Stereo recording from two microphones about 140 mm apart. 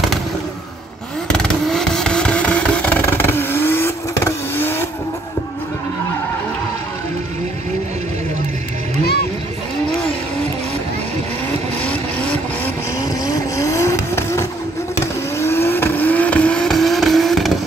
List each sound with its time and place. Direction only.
1.3 s vehicle: 5° left (ahead or behind)
11.8 s vehicle: 10° left (ahead or behind)
13.2 s vehicle: 25° left (ahead or behind); by 17.5 s centre (ahead or behind)